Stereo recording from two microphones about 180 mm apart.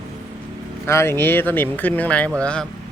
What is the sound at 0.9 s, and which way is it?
Speech, 15° left (ahead or behind).